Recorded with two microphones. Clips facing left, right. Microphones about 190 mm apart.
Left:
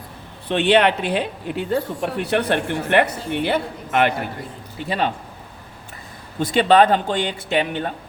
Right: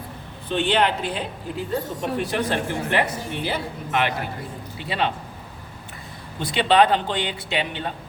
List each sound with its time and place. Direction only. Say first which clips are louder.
0.4 s speech: left 5 dB; 70° left (ahead or behind)
4.8 s speech: left 3 dB; 45° left (ahead or behind)
6.4 s speech: left 3 dB; 45° left (ahead or behind)